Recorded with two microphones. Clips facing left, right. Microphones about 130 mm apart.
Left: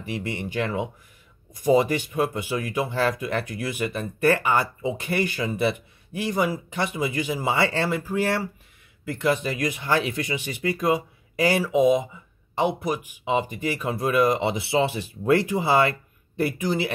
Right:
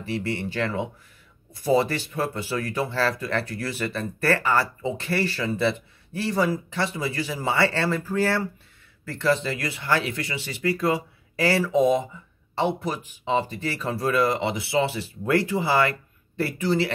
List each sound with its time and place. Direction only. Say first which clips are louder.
0.0 s speech: right 2 dB; 15° left (ahead or behind)